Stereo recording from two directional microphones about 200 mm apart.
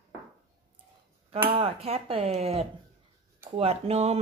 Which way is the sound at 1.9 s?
30° right (ahead or behind).